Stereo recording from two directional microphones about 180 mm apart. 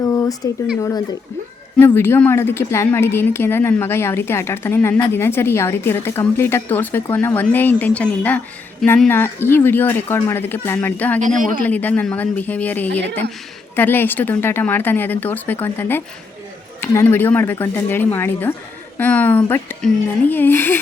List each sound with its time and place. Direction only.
0.0 s a sound: 20° left (ahead or behind)
0.8 s a woman's voice: 15° left (ahead or behind)
11.2 s a man's voice: 45° right (ahead or behind)
11.6 s a woman's voice: 10° left (ahead or behind)